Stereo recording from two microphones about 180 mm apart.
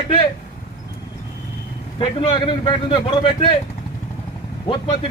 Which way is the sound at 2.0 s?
30° left (ahead or behind).